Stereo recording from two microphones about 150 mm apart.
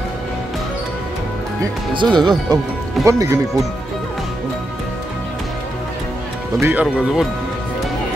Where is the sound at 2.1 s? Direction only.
30° right (ahead or behind).